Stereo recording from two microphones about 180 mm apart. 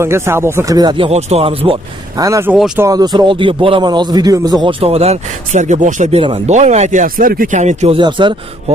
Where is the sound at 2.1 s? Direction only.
15° right (ahead or behind).